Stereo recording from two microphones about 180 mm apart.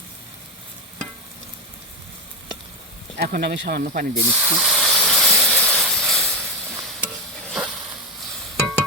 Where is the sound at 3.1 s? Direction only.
55° right (ahead or behind).